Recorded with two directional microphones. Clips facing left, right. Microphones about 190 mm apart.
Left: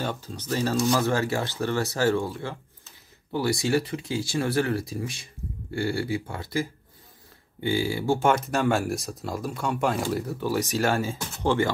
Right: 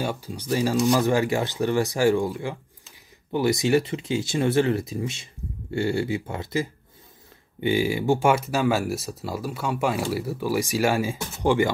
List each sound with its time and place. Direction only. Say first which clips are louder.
0.0 s speech: right 2 dB; 10° right (ahead or behind)